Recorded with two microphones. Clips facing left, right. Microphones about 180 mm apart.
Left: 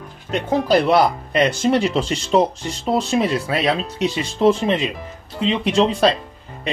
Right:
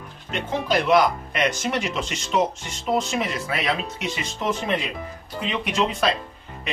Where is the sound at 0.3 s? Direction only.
35° left (ahead or behind).